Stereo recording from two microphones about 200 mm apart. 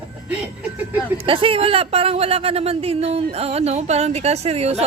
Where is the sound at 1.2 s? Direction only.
25° right (ahead or behind).